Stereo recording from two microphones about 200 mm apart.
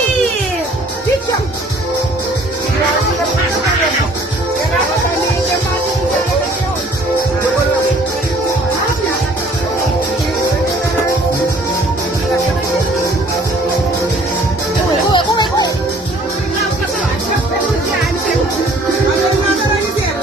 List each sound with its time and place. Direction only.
15.1 s music: 20° left (ahead or behind)